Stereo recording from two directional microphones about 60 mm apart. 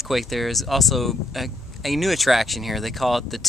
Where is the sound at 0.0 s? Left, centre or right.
Centre.